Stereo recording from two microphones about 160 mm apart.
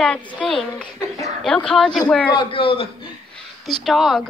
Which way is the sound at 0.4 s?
5° left (ahead or behind).